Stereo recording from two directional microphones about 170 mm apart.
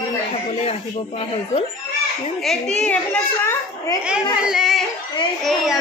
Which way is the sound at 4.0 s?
5° right (ahead or behind).